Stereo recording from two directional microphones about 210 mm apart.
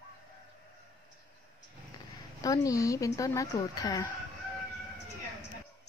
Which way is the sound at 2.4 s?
15° left (ahead or behind).